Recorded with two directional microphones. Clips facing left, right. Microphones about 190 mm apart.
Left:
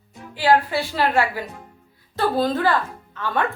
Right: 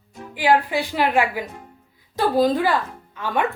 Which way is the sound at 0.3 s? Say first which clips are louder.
Even; 15° right (ahead or behind).